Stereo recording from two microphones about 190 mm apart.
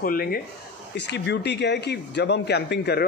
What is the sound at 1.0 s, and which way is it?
Speech, 65° left (ahead or behind).